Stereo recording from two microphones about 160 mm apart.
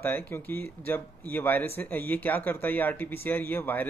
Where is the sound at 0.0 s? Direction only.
10° left (ahead or behind).